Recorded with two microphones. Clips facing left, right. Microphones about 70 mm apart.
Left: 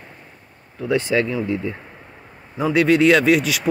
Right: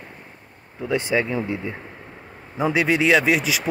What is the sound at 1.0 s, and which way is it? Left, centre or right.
Speech, right.